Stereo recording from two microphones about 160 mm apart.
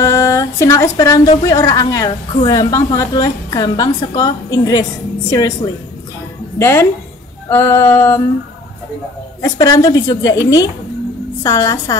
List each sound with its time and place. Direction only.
0.0 s a sound: 20° left (ahead or behind)
1.4 s a woman's voice: 20° left (ahead or behind)
6.6 s music: 15° left (ahead or behind)
9.4 s a woman's voice: 20° left (ahead or behind)